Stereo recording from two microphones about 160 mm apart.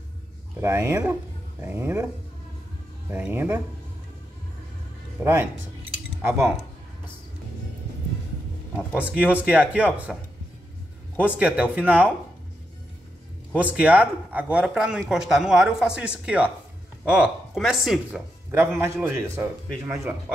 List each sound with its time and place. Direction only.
0.6 s speech: 20° right (ahead or behind)
3.1 s speech: 15° right (ahead or behind)
5.2 s speech: 15° right (ahead or behind)
8.7 s speech: 10° right (ahead or behind)
11.1 s speech: 10° right (ahead or behind)
13.6 s speech: 10° right (ahead or behind)
18.5 s speech: 15° right (ahead or behind)